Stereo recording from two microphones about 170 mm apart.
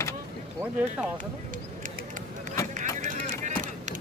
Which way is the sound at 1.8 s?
50° right (ahead or behind).